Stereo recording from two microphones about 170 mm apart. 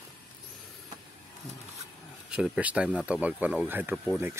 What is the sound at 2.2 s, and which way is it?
Speech, 5° right (ahead or behind).